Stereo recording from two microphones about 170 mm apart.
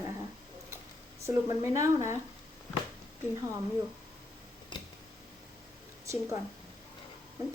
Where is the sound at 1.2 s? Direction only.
15° right (ahead or behind).